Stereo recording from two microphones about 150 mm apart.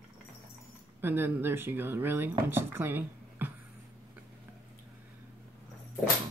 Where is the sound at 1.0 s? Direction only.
15° right (ahead or behind).